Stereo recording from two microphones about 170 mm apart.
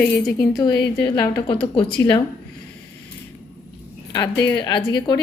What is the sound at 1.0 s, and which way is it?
A woman's voice, 25° left (ahead or behind).